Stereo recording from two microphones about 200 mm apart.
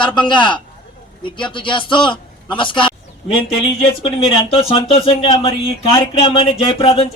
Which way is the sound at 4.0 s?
30° left (ahead or behind).